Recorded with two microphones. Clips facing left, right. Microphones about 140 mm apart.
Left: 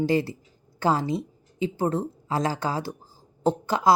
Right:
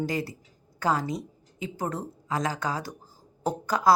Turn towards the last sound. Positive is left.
turn(degrees=25)  # may be behind; listen again after turning